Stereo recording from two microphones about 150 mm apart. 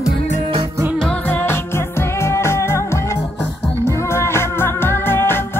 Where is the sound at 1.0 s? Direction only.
10° left (ahead or behind).